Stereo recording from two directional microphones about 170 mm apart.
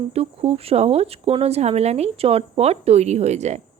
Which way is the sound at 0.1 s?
35° right (ahead or behind).